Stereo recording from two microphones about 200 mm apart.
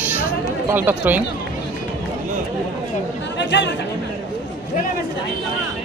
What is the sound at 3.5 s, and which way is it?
Speech, 60° left (ahead or behind).